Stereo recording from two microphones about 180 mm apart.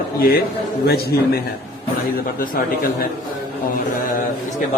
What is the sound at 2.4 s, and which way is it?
Speech, 50° left (ahead or behind).